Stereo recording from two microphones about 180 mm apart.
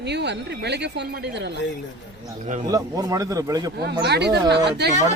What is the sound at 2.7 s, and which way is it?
Speech, 15° right (ahead or behind).